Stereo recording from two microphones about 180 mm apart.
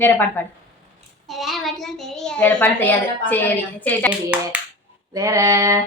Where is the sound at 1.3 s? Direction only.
Centre (ahead or behind).